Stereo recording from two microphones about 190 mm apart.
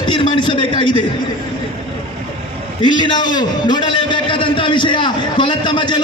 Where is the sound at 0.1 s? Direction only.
25° left (ahead or behind).